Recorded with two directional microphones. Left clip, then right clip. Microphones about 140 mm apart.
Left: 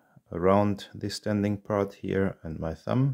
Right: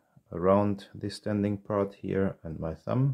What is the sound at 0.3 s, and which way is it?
Speech, 25° left (ahead or behind).